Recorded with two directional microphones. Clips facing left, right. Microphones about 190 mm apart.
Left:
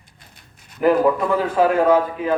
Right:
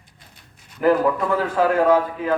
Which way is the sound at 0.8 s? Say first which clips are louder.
Left 2 dB; 15° left (ahead or behind).